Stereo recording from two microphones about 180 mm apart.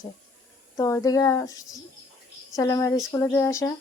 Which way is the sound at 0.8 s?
15° left (ahead or behind).